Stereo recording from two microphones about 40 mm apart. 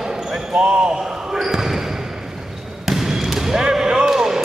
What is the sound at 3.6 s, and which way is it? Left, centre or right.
Basketball bounce, centre.